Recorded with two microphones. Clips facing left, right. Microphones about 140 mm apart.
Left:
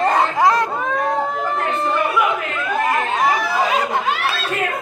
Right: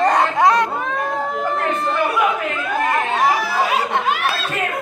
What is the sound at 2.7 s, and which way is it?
Laughter, centre (ahead or behind).